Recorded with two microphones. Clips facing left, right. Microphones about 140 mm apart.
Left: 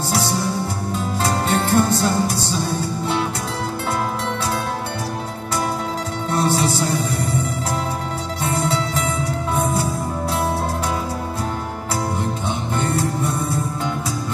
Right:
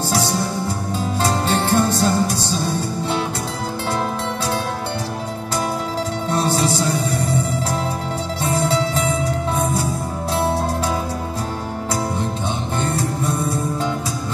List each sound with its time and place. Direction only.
0.9 s music: 30° right (ahead or behind)
6.3 s music: 30° right (ahead or behind)
8.4 s music: 30° right (ahead or behind)